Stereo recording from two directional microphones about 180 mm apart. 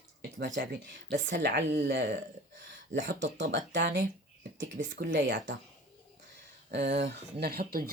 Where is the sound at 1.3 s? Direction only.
70° right (ahead or behind).